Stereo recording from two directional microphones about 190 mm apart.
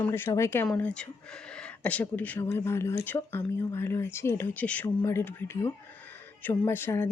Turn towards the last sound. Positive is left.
turn(degrees=10)  # may be behind; listen again after turning